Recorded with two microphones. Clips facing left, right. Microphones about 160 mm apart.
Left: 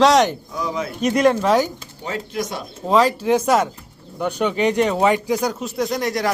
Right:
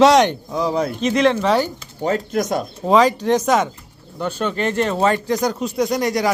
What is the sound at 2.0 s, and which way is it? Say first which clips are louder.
Speech: right 6 dB; 45° right (ahead or behind).